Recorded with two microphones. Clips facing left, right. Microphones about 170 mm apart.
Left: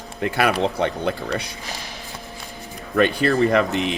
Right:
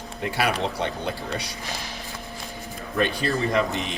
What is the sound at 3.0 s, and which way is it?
Speech, 60° left (ahead or behind).